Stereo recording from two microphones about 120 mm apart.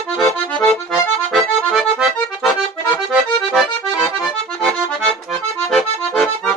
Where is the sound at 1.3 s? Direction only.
Centre (ahead or behind).